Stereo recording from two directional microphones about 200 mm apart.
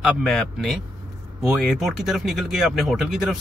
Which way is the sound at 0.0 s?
Centre (ahead or behind).